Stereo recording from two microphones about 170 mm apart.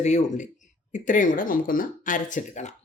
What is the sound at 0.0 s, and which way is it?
Speech, 45° left (ahead or behind).